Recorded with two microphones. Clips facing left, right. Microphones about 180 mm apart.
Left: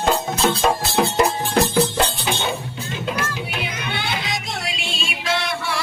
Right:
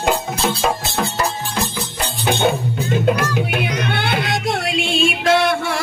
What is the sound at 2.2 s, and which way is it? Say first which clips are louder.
Music: right 7 dB; 55° right (ahead or behind).